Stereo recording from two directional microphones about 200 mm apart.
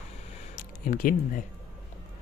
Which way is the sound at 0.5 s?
45° left (ahead or behind).